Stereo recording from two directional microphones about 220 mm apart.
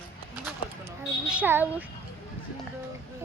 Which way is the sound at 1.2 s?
5° right (ahead or behind).